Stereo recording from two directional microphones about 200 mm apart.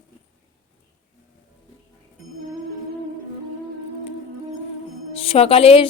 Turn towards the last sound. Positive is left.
turn(degrees=30)  # may be behind; listen again after turning